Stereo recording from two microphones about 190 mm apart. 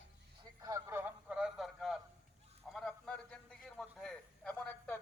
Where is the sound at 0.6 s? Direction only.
15° right (ahead or behind); by 4.9 s 5° left (ahead or behind).